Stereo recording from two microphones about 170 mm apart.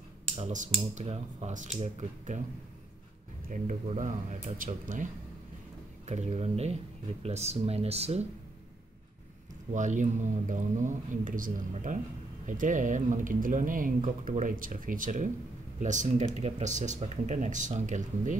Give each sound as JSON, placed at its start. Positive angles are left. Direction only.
{"t": 0.4, "sound": "speech", "side_deg": -45}
{"t": 3.8, "sound": "speech", "side_deg": -40}
{"t": 6.0, "sound": "speech", "side_deg": -40}
{"t": 9.7, "sound": "speech", "side_deg": -45}